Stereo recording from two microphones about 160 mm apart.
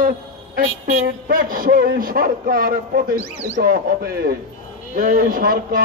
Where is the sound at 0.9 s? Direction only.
65° right (ahead or behind).